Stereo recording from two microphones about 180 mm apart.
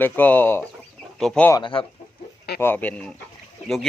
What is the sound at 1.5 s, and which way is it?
Speech, 25° left (ahead or behind).